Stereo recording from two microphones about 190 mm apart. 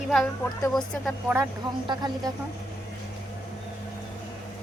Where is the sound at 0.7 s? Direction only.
Centre (ahead or behind).